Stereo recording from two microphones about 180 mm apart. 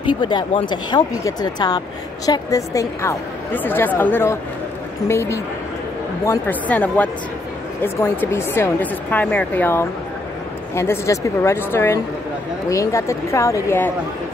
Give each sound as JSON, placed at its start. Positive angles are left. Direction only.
{"t": 0.1, "sound": "a woman's voice", "side_deg": 25}